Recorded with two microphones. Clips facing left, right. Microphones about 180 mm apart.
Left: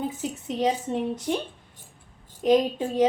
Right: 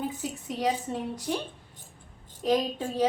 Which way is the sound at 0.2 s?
20° left (ahead or behind).